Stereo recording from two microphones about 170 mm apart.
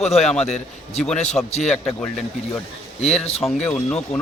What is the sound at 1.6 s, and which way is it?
Speech, 5° left (ahead or behind).